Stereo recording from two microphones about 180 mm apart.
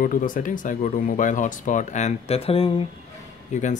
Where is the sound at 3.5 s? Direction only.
40° left (ahead or behind).